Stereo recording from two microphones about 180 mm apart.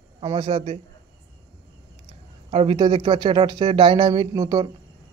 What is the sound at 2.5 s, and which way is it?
A man's voice, 30° right (ahead or behind).